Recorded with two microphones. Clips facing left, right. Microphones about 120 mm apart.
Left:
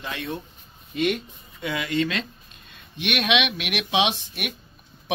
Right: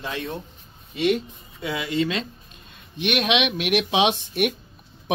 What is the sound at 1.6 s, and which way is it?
A man's voice, 25° right (ahead or behind).